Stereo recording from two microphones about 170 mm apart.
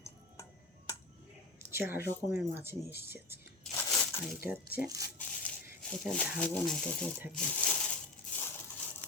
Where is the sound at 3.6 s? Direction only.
5° left (ahead or behind).